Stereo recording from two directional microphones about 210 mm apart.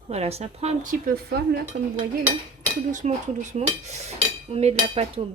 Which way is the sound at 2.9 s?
35° right (ahead or behind).